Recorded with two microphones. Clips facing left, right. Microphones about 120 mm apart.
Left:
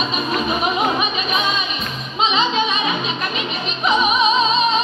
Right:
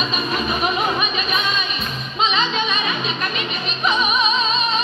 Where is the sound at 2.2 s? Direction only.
20° left (ahead or behind).